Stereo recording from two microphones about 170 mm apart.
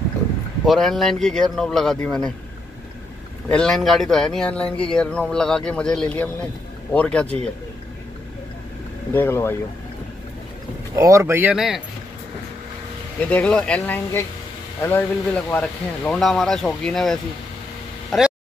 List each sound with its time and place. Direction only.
0.7 s a man's voice: centre (ahead or behind)
3.4 s a man's voice: 5° left (ahead or behind)
9.1 s speech: 10° left (ahead or behind)
11.0 s speech: 20° right (ahead or behind)
11.5 s a man's voice: 5° right (ahead or behind)
13.3 s a man's voice: 5° left (ahead or behind)